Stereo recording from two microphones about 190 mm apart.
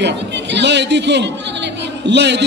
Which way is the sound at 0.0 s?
65° right (ahead or behind).